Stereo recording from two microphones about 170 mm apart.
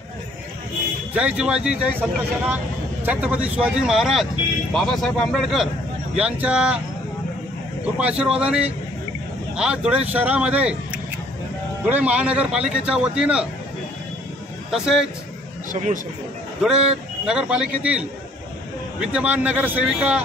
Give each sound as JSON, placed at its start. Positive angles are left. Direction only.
{"t": 1.1, "sound": "speech", "side_deg": -5}
{"t": 8.0, "sound": "speech", "side_deg": -5}
{"t": 14.7, "sound": "speech", "side_deg": -5}
{"t": 15.7, "sound": "a man's voice", "side_deg": -50}
{"t": 16.6, "sound": "speech", "side_deg": -5}